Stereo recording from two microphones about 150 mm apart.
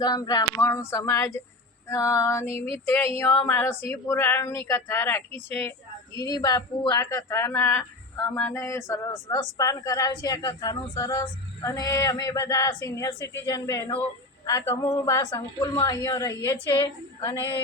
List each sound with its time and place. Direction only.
0.0 s a woman's voice: 25° left (ahead or behind)